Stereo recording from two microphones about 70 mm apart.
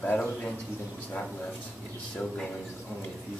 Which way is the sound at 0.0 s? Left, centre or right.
Left.